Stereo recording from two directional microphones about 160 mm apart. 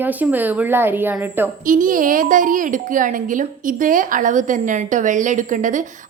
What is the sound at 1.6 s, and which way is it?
A woman's voice, 55° right (ahead or behind).